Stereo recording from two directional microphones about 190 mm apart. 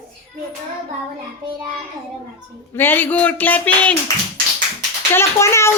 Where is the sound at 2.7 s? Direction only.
10° left (ahead or behind).